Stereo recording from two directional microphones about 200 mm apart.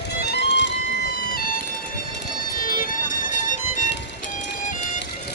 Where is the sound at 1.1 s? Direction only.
50° left (ahead or behind).